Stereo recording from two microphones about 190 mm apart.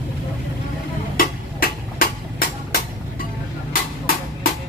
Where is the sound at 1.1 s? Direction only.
50° left (ahead or behind).